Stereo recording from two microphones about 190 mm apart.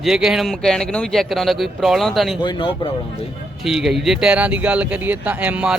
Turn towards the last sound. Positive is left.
turn(degrees=-5)  # may be behind; listen again after turning